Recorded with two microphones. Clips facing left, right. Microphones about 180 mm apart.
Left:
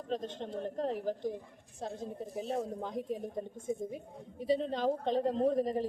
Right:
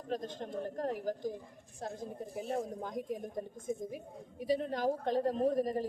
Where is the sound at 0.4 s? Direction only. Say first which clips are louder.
Left 1 dB; 25° left (ahead or behind).